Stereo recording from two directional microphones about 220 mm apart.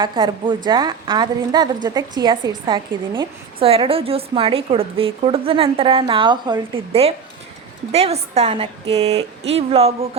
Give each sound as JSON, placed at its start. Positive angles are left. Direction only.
{"t": 0.0, "sound": "a woman's voice", "side_deg": -20}